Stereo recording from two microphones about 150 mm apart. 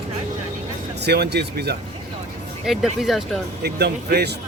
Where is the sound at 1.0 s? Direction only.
90° right.